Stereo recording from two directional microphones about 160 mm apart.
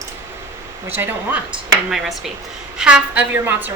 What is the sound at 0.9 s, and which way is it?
Speech, 15° right (ahead or behind).